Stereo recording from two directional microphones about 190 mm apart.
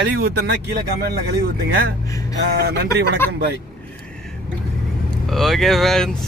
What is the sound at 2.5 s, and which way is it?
Speech, 55° right (ahead or behind).